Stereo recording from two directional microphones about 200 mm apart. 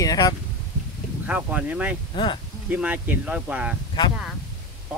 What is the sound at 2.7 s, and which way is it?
Speech, 10° right (ahead or behind).